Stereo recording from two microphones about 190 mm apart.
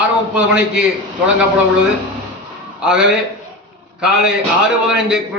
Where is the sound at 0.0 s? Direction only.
5° right (ahead or behind).